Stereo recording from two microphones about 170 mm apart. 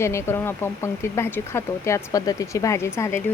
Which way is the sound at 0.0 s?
15° left (ahead or behind).